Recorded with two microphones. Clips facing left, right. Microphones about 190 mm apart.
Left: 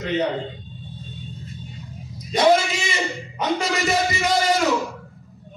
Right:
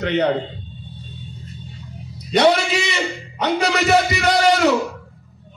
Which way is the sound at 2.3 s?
70° right (ahead or behind).